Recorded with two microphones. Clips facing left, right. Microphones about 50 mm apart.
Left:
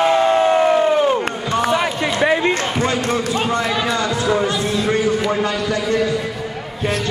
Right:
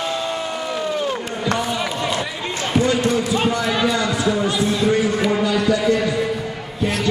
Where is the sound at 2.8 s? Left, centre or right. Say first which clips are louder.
Right 2 dB; left.